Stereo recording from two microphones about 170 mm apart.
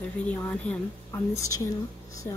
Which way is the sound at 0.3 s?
10° left (ahead or behind).